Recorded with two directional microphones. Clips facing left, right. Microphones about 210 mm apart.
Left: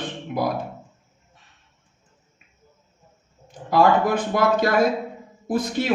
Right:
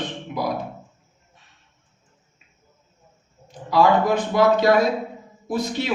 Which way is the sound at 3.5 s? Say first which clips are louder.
Even; 50° left (ahead or behind).